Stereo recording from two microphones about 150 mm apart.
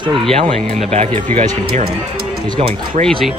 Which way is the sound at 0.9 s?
45° right (ahead or behind).